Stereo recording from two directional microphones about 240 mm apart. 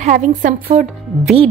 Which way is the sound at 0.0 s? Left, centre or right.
Right.